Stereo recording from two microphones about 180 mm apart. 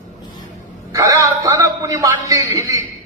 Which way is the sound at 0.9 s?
20° right (ahead or behind).